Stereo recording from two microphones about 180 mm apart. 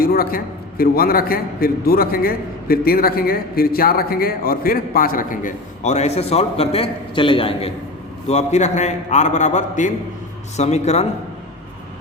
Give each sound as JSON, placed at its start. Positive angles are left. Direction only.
{"t": 0.0, "sound": "a man's voice", "side_deg": 55}